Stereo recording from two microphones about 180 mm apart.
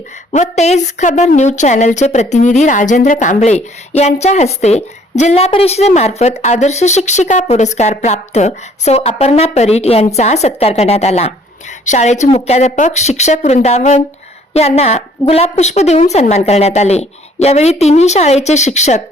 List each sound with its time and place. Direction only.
0.3 s a woman's voice: 40° left (ahead or behind)